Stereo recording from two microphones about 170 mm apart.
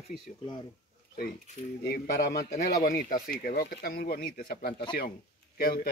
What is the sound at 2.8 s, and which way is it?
Speech, 50° left (ahead or behind).